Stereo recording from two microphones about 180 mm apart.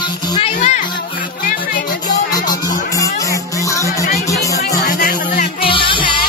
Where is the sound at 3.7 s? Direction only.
15° left (ahead or behind).